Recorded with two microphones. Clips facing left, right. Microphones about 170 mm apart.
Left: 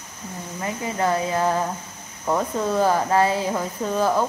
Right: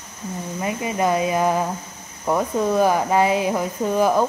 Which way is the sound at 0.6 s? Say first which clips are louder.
Right 2 dB; 15° right (ahead or behind).